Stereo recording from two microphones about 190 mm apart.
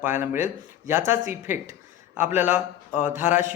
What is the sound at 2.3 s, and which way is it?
A man's voice, 10° right (ahead or behind).